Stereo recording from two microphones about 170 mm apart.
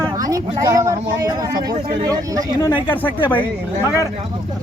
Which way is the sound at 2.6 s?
30° left (ahead or behind).